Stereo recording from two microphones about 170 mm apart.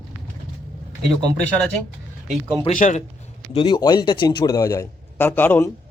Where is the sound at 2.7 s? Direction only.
45° left (ahead or behind).